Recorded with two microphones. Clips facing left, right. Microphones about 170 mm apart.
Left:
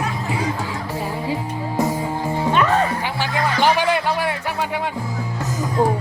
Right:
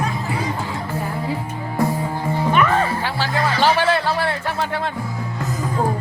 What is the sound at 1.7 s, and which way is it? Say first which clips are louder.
Music: right 1 dB; 20° left (ahead or behind).